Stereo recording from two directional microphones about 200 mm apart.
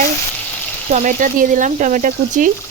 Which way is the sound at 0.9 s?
40° right (ahead or behind).